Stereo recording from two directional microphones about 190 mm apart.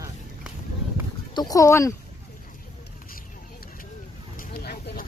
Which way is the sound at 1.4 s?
20° left (ahead or behind).